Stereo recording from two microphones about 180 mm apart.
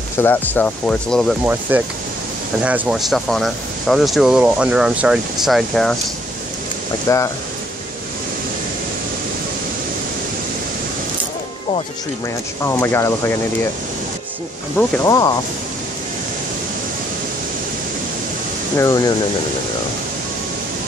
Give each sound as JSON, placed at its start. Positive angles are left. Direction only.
{"t": 0.2, "sound": "speech", "side_deg": 10}
{"t": 1.4, "sound": "speech", "side_deg": -10}
{"t": 7.1, "sound": "speech", "side_deg": 15}
{"t": 12.6, "sound": "speech", "side_deg": 15}
{"t": 15.0, "sound": "speech", "side_deg": 20}
{"t": 18.8, "sound": "speech", "side_deg": 20}